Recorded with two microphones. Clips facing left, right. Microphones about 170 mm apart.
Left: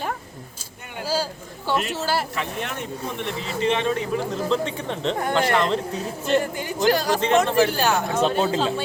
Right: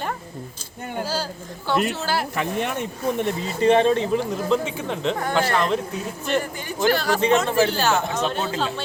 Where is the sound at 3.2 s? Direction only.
45° right (ahead or behind).